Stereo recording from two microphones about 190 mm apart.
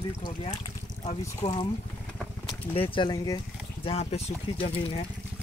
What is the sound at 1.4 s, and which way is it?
Speech, 25° left (ahead or behind).